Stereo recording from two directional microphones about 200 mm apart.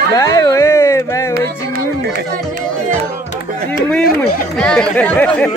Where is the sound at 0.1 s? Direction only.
15° left (ahead or behind).